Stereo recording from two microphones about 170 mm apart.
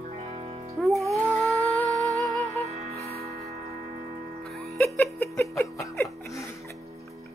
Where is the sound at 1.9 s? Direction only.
20° right (ahead or behind).